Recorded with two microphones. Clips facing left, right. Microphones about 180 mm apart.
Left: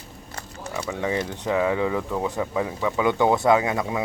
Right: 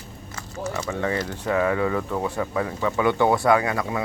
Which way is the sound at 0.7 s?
15° left (ahead or behind).